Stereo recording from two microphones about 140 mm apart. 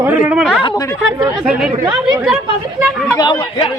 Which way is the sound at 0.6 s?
35° left (ahead or behind).